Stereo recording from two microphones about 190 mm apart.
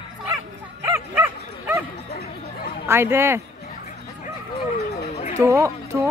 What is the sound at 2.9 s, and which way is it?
Speech, 15° right (ahead or behind).